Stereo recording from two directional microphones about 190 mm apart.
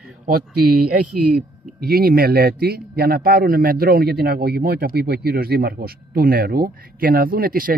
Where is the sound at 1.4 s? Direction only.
50° right (ahead or behind).